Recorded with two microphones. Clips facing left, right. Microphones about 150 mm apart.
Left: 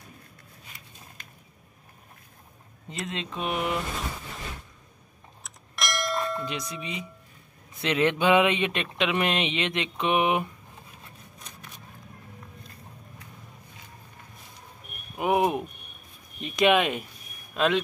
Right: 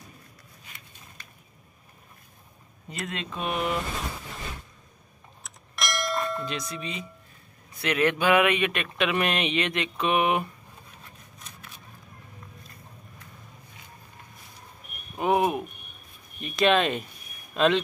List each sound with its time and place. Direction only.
3.1 s speech: 20° left (ahead or behind)
5.4 s church bell: centre (ahead or behind)
6.4 s speech: 15° left (ahead or behind)
15.1 s a sound: 15° left (ahead or behind)
17.6 s a man's voice: 5° left (ahead or behind)